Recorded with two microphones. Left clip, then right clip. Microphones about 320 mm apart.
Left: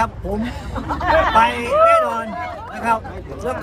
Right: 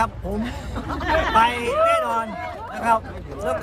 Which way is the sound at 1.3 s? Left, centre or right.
Centre.